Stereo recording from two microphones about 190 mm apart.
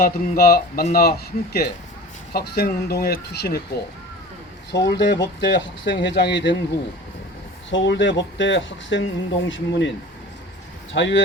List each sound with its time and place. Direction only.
0.0 s speech: 55° left (ahead or behind)
4.9 s speech: 65° left (ahead or behind)
7.7 s speech: 75° left (ahead or behind)
10.9 s speech: 70° left (ahead or behind)